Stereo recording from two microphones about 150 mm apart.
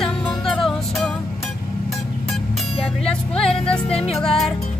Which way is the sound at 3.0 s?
5° left (ahead or behind).